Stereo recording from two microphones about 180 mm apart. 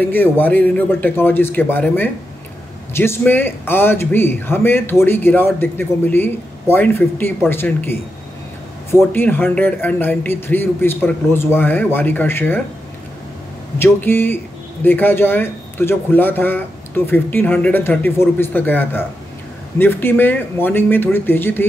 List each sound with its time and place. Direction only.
0.0 s speech: 10° left (ahead or behind)
9.1 s speech: 10° left (ahead or behind)
13.7 s speech: 10° left (ahead or behind)